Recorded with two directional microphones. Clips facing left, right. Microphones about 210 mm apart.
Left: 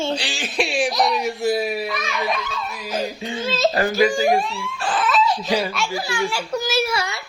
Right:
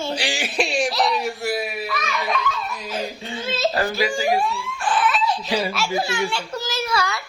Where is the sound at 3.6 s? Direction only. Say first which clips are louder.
Left 4 dB; 45° left (ahead or behind).